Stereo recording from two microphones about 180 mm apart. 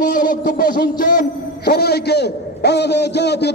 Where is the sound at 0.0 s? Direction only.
55° left (ahead or behind).